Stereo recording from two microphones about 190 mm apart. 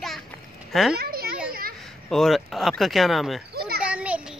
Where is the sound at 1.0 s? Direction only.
55° right (ahead or behind).